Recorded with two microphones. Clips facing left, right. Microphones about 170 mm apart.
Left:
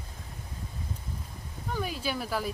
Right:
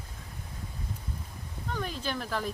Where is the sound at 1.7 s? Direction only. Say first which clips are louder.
Left 2 dB; 10° left (ahead or behind).